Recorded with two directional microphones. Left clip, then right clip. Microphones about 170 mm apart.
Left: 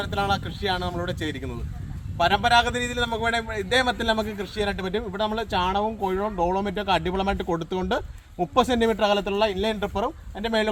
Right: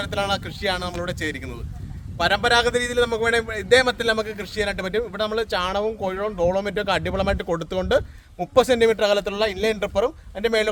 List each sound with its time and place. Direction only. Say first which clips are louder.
0.0 s a man's voice: right 1 dB; 35° right (ahead or behind)